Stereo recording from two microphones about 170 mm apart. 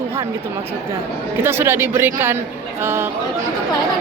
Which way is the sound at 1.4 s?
15° right (ahead or behind).